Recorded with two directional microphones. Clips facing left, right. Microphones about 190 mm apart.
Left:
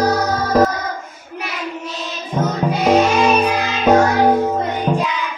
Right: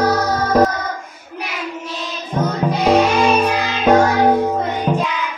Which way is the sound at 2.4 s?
5° left (ahead or behind).